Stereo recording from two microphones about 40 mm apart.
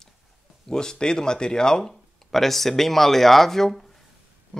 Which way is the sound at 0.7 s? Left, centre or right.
Centre.